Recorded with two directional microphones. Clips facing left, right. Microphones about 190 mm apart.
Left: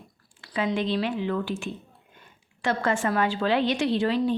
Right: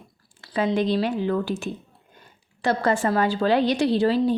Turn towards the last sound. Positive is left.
turn(degrees=-35)  # may be behind; listen again after turning